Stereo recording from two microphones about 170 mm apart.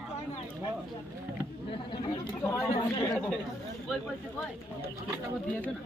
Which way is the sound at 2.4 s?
15° left (ahead or behind).